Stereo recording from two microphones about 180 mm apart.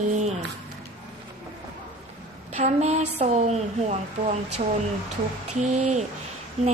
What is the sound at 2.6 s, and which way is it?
A woman's voice, 40° right (ahead or behind).